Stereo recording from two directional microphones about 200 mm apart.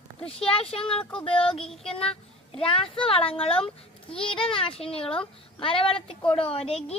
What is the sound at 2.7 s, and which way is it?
Speech, 25° left (ahead or behind).